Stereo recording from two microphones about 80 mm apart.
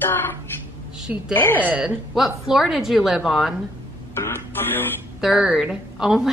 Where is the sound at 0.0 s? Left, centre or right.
Left.